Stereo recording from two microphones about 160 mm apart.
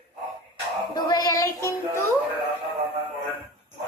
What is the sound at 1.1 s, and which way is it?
Music, 25° left (ahead or behind).